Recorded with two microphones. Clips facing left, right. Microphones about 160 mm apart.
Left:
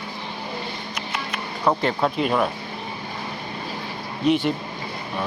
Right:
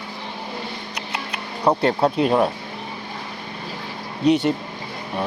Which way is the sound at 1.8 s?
35° right (ahead or behind).